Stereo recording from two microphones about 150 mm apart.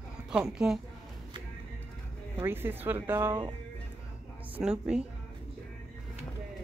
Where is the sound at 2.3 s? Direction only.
15° right (ahead or behind).